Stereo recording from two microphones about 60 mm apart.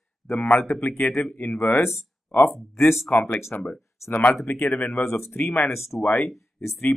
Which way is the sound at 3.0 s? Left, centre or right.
Left.